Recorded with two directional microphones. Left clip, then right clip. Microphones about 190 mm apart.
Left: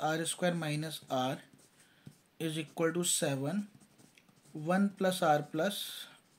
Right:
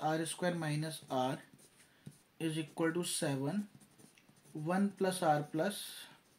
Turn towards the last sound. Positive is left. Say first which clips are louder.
# left 3 dB
turn(degrees=30)  # may be behind; listen again after turning